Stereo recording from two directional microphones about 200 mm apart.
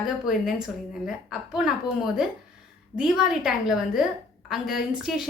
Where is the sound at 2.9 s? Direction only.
5° right (ahead or behind).